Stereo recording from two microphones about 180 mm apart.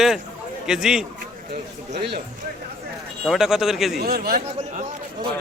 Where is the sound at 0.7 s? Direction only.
5° right (ahead or behind).